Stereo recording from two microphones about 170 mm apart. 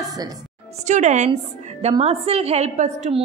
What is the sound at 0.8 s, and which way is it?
A woman's voice, 45° right (ahead or behind).